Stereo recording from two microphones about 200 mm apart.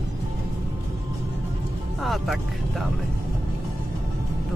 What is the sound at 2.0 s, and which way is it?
Vehicle, centre (ahead or behind).